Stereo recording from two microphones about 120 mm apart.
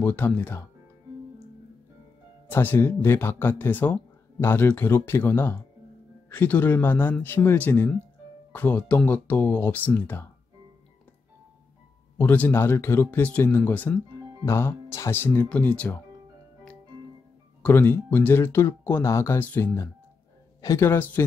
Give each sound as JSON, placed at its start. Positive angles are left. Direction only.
{"t": 0.0, "sound": "speech", "side_deg": 15}
{"t": 2.4, "sound": "speech", "side_deg": 15}
{"t": 12.2, "sound": "speech", "side_deg": 15}
{"t": 17.6, "sound": "speech", "side_deg": 15}